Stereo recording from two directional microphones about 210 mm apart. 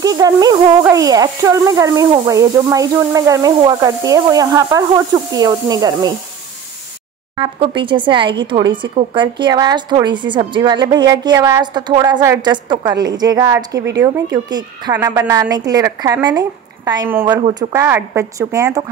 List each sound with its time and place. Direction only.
0.0 s speech: 15° right (ahead or behind)
7.3 s speech: 25° right (ahead or behind)